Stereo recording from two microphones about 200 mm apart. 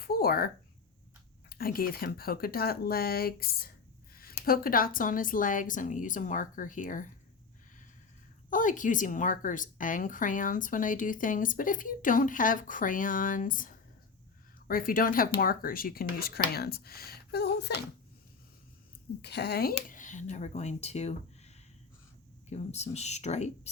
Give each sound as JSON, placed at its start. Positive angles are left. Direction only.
{"t": 0.0, "sound": "a sound", "side_deg": 50}
{"t": 1.5, "sound": "a woman's voice", "side_deg": 50}
{"t": 8.4, "sound": "a woman's voice", "side_deg": 40}
{"t": 19.2, "sound": "a woman's voice", "side_deg": 55}
{"t": 19.7, "sound": "a woman's voice", "side_deg": 40}